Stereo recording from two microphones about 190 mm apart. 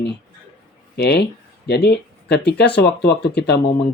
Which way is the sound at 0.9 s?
60° left (ahead or behind).